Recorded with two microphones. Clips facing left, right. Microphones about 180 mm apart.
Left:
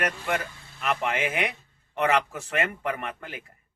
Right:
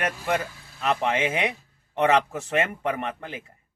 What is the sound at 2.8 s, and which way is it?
Speech, 25° right (ahead or behind).